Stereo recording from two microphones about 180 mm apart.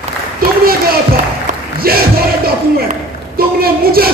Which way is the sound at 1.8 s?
55° right (ahead or behind).